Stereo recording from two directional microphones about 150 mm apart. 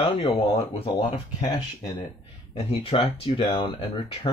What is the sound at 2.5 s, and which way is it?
Speech, 40° left (ahead or behind).